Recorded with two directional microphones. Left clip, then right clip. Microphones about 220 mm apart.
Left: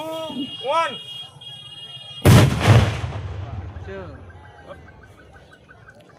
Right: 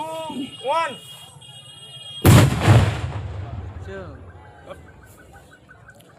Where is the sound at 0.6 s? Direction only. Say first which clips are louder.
Left 1 dB; 20° left (ahead or behind).